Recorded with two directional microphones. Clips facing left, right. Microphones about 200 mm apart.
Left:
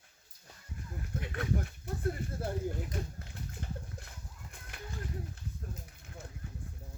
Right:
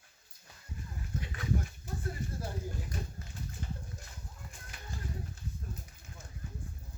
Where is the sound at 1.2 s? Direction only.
60° left (ahead or behind).